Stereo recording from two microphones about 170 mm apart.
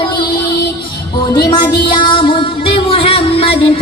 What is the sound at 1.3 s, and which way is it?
Music, 25° left (ahead or behind).